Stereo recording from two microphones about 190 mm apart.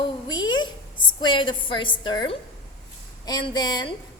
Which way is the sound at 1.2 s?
25° left (ahead or behind).